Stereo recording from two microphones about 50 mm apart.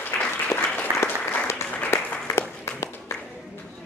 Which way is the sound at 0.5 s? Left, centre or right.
Left.